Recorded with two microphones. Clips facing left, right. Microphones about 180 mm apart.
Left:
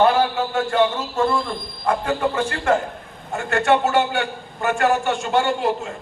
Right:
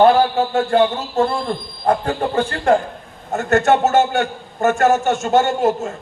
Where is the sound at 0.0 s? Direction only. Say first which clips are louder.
Right 4 dB; 35° right (ahead or behind).